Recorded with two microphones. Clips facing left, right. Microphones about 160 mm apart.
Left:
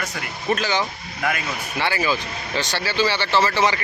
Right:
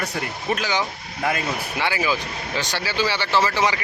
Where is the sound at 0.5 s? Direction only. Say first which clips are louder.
Left 2 dB; 10° right (ahead or behind).